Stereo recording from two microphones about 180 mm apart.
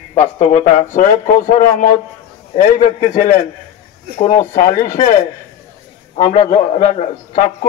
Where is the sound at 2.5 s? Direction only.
45° left (ahead or behind).